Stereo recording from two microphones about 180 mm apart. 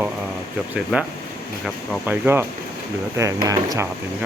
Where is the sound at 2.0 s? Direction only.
10° right (ahead or behind).